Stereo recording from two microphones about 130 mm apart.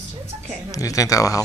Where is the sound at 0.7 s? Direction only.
25° left (ahead or behind).